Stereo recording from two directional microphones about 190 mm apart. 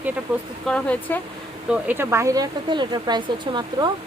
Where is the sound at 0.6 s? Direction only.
5° left (ahead or behind).